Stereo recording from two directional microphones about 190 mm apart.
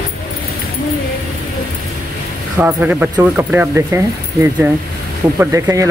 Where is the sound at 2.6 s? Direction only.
5° right (ahead or behind).